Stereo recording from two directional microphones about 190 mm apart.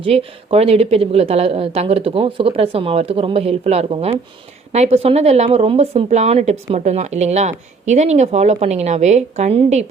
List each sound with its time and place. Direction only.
0.0 s speech: 30° right (ahead or behind)